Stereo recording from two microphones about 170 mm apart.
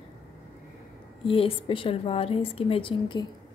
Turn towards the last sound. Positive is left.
turn(degrees=30)  # may be behind; listen again after turning